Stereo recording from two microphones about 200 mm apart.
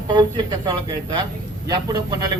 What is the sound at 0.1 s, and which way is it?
Speech, 20° right (ahead or behind).